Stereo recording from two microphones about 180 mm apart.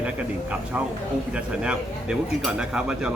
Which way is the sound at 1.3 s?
5° right (ahead or behind).